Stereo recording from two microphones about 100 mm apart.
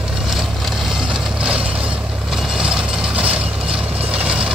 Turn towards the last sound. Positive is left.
turn(degrees=-10)  # may be behind; listen again after turning